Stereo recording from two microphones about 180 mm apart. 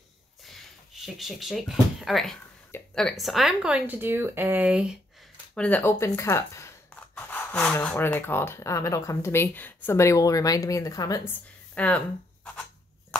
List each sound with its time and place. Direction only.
1.0 s speech: centre (ahead or behind)
5.5 s a woman's voice: 5° left (ahead or behind)
11.7 s speech: 5° left (ahead or behind)